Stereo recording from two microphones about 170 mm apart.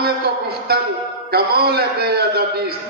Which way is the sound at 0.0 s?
65° right (ahead or behind).